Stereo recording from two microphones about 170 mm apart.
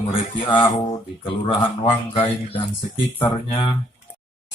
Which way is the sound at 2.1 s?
30° left (ahead or behind).